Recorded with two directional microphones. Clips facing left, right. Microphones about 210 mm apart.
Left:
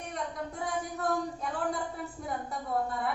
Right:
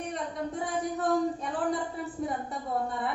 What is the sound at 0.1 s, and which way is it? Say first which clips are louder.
Speech: even; centre (ahead or behind).